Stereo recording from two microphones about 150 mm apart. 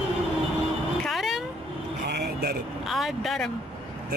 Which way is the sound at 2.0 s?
90° right.